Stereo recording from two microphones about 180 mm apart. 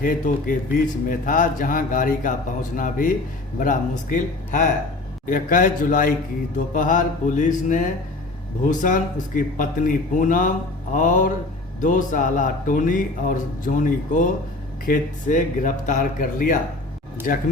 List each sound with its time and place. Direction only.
0.0 s speech: 50° left (ahead or behind)